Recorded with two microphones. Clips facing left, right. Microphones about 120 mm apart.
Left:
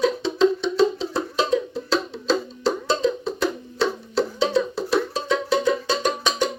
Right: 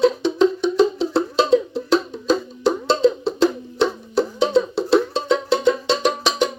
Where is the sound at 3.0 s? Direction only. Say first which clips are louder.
Right 6 dB; 30° right (ahead or behind).